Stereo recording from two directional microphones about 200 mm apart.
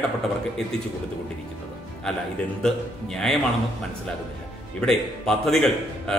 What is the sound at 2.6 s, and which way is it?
Speech, centre (ahead or behind).